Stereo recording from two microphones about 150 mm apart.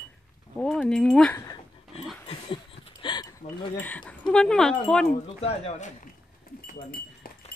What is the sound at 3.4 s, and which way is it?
Speech, 65° left (ahead or behind).